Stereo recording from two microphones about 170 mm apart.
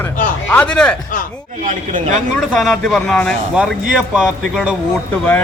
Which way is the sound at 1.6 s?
50° right (ahead or behind).